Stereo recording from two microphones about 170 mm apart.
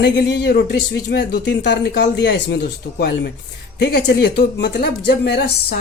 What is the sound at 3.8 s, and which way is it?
Speech, 80° left.